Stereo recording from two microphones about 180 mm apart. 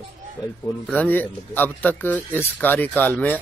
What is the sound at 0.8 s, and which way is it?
Speech, 10° left (ahead or behind).